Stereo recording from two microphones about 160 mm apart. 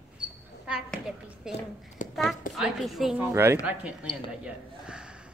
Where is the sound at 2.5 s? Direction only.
Centre (ahead or behind).